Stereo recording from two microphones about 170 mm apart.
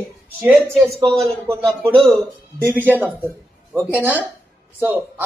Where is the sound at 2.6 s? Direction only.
10° right (ahead or behind).